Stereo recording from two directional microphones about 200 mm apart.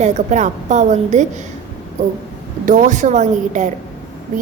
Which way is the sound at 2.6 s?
40° right (ahead or behind).